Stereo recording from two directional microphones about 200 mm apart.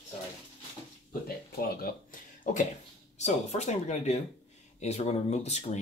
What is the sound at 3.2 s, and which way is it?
Speech, 35° left (ahead or behind).